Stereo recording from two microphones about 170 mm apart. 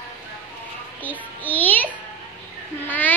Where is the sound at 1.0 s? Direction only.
10° left (ahead or behind).